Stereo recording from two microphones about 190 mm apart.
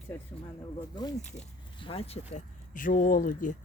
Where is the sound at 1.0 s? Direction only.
20° left (ahead or behind).